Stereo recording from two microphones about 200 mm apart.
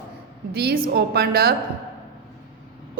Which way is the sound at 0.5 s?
50° right (ahead or behind).